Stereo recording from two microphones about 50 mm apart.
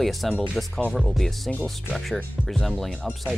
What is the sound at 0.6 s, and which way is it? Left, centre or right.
Speech, centre.